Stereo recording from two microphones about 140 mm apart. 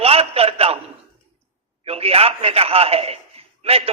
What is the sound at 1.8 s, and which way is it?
A man's voice, 45° right (ahead or behind).